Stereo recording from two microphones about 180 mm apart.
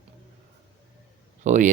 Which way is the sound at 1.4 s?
45° right (ahead or behind).